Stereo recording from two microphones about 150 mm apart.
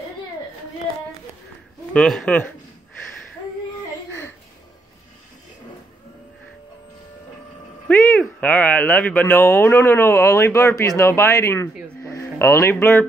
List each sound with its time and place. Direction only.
2.0 s speech: 5° left (ahead or behind)
7.9 s speech: 10° left (ahead or behind)
12.0 s music: 15° left (ahead or behind)